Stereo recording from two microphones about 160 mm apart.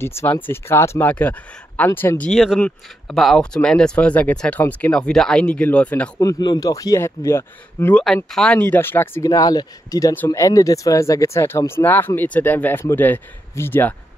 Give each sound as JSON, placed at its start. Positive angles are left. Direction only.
{"t": 0.0, "sound": "speech", "side_deg": 15}
{"t": 6.1, "sound": "a man's voice", "side_deg": 25}
{"t": 8.3, "sound": "speech", "side_deg": 5}